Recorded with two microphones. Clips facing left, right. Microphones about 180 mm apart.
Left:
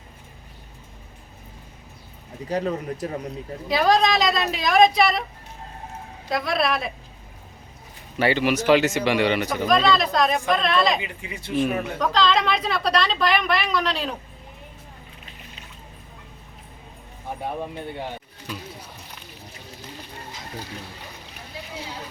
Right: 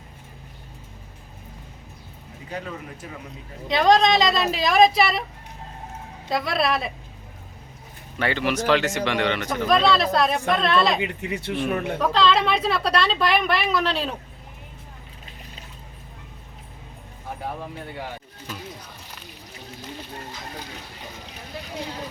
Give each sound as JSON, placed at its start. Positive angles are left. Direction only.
{"t": 2.5, "sound": "speech", "side_deg": 40}
{"t": 3.7, "sound": "a woman's voice", "side_deg": 5}
{"t": 6.3, "sound": "a woman's voice", "side_deg": 0}
{"t": 8.2, "sound": "speech", "side_deg": 10}
{"t": 9.6, "sound": "a woman's voice", "side_deg": 0}
{"t": 11.0, "sound": "speech", "side_deg": -65}
{"t": 11.9, "sound": "a woman's voice", "side_deg": -5}
{"t": 17.4, "sound": "speech", "side_deg": 25}
{"t": 21.5, "sound": "rowboat", "side_deg": -60}